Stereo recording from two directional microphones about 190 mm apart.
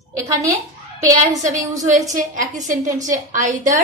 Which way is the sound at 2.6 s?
40° right (ahead or behind).